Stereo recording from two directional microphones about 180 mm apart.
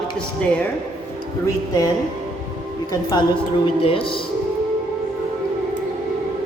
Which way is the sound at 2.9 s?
20° left (ahead or behind).